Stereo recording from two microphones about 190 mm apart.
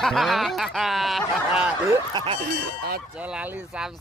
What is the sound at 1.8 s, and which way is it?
Speech, 25° right (ahead or behind).